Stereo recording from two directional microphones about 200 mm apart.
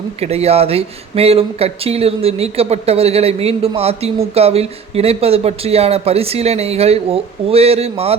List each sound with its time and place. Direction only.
0.2 s speech: 30° right (ahead or behind)